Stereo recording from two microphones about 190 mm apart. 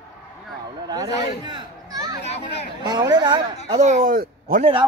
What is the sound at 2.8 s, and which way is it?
Speech, 20° right (ahead or behind).